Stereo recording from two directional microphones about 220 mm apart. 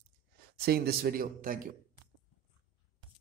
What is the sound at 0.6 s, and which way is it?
Speech, 45° right (ahead or behind).